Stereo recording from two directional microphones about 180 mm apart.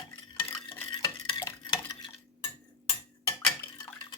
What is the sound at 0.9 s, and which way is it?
Dishes, 20° left (ahead or behind).